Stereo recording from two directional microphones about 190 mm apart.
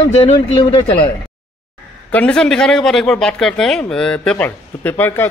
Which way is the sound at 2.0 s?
5° left (ahead or behind).